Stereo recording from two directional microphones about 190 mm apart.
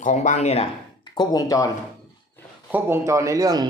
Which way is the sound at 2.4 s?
10° left (ahead or behind).